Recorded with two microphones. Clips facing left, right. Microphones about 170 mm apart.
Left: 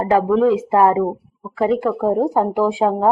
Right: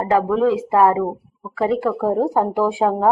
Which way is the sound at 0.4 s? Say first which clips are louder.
Left 1 dB; 20° left (ahead or behind).